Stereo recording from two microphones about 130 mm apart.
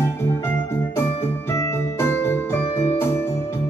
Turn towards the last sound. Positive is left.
turn(degrees=20)  # may be behind; listen again after turning